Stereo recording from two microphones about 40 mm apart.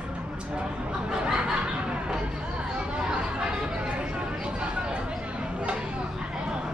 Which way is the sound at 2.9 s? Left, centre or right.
Right.